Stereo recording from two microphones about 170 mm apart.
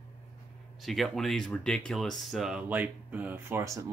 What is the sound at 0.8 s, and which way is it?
Speech, centre (ahead or behind).